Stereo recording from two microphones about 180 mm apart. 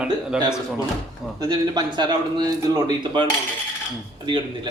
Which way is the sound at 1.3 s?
20° right (ahead or behind).